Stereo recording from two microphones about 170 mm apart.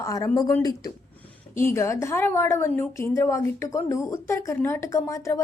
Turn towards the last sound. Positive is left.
turn(degrees=20)  # may be behind; listen again after turning